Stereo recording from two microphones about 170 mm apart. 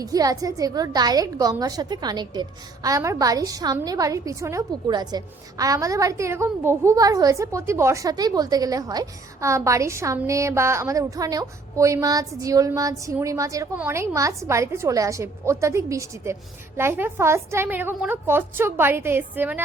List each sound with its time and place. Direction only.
0.0 s a woman's voice: 20° right (ahead or behind)